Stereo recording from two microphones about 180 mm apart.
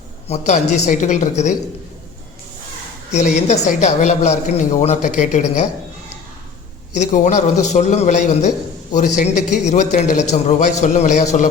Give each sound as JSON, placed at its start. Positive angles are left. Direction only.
{"t": 0.3, "sound": "a woman's voice", "side_deg": 40}
{"t": 3.1, "sound": "a woman's voice", "side_deg": 40}
{"t": 6.9, "sound": "a woman's voice", "side_deg": 40}